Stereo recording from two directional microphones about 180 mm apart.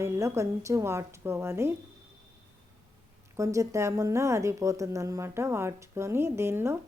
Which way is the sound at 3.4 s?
15° right (ahead or behind).